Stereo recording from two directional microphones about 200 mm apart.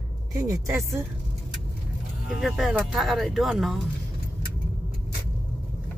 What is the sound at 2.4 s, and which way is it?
Speech, centre (ahead or behind).